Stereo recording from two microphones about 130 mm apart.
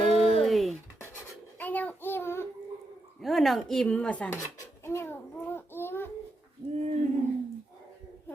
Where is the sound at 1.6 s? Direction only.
15° left (ahead or behind).